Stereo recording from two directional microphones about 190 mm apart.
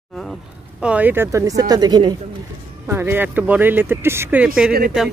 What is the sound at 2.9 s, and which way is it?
Speech, 10° right (ahead or behind).